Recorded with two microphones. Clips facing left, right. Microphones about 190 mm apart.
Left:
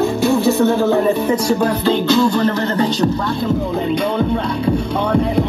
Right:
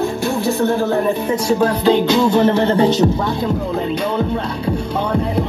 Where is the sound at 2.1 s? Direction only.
20° right (ahead or behind).